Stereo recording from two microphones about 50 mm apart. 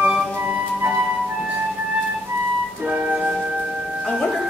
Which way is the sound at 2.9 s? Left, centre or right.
Right.